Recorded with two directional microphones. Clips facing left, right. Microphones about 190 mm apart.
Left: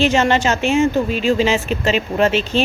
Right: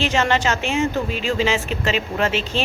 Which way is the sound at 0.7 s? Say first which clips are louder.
Left 6 dB; 20° right (ahead or behind).